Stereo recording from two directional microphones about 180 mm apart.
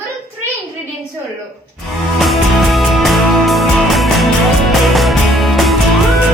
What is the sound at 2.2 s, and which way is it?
Music, centre (ahead or behind).